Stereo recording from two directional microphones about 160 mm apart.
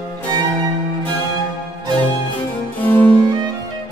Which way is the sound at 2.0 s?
10° left (ahead or behind).